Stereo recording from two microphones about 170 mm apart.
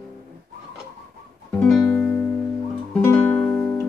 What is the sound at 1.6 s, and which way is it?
Music, 5° left (ahead or behind).